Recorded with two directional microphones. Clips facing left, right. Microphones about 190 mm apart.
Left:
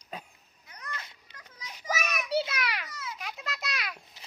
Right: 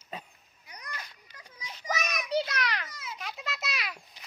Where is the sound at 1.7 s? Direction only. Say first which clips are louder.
Left 1 dB; 10° left (ahead or behind).